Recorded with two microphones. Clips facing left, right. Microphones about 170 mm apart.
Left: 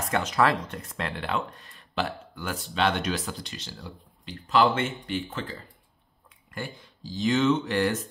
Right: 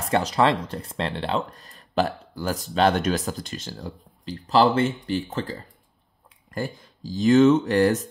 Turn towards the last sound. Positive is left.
turn(degrees=-40)  # may be behind; listen again after turning